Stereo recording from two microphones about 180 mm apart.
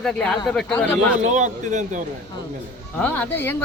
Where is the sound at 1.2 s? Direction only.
40° right (ahead or behind).